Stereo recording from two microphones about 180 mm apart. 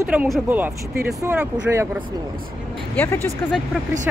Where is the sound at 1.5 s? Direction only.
15° right (ahead or behind).